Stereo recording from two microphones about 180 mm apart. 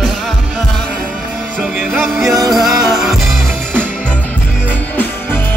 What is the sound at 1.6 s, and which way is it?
Music, 5° right (ahead or behind).